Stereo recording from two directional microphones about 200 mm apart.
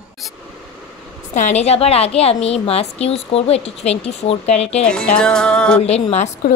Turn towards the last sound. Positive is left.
turn(degrees=30)  # may be behind; listen again after turning